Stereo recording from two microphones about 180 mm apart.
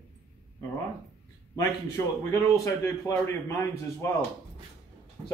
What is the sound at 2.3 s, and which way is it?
A man's voice, 15° left (ahead or behind).